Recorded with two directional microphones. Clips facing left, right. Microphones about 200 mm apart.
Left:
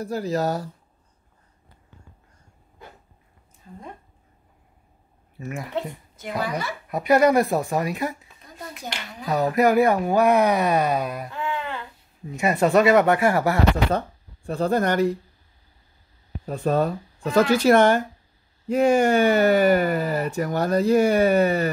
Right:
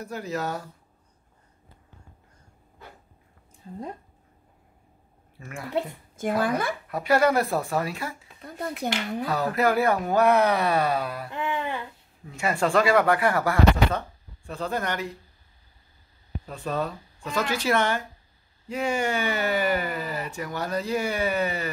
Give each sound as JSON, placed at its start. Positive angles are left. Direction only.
{"t": 0.0, "sound": "speech", "side_deg": 35}
{"t": 3.6, "sound": "speech", "side_deg": -30}
{"t": 5.4, "sound": "speech", "side_deg": 20}
{"t": 6.4, "sound": "speech", "side_deg": -50}
{"t": 6.9, "sound": "speech", "side_deg": 20}
{"t": 8.5, "sound": "speech", "side_deg": -60}
{"t": 9.3, "sound": "speech", "side_deg": 15}
{"t": 11.2, "sound": "a sound", "side_deg": -20}
{"t": 12.3, "sound": "speech", "side_deg": 20}
{"t": 13.9, "sound": "speech", "side_deg": 40}
{"t": 16.4, "sound": "speech", "side_deg": 45}